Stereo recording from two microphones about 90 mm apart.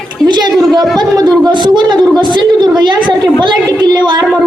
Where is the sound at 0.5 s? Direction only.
Centre (ahead or behind).